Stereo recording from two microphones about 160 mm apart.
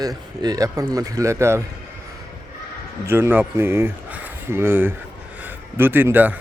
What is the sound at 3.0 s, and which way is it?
A man's voice, 15° right (ahead or behind).